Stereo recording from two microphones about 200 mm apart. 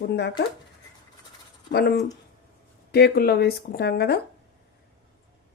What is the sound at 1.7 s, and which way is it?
Speech, 55° left (ahead or behind).